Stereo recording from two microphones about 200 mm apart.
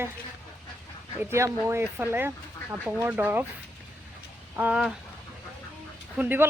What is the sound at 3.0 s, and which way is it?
Speech, 10° right (ahead or behind).